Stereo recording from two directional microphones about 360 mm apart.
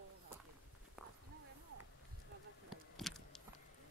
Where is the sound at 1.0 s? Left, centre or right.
Centre.